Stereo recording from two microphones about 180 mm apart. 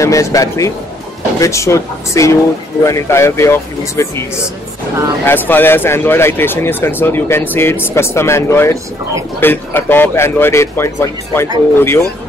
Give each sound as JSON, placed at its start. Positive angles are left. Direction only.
{"t": 0.0, "sound": "speech", "side_deg": 15}
{"t": 5.2, "sound": "speech", "side_deg": 10}